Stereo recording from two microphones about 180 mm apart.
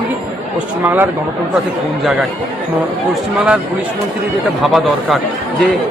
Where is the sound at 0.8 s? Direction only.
10° right (ahead or behind).